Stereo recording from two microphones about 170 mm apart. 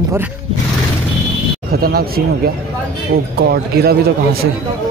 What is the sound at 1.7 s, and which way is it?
Speech, 65° right (ahead or behind).